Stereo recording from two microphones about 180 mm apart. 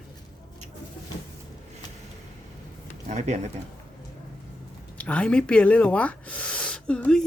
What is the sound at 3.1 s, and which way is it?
Speech, 40° right (ahead or behind).